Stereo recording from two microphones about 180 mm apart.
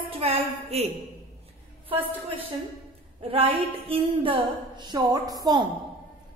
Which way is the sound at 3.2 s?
30° right (ahead or behind).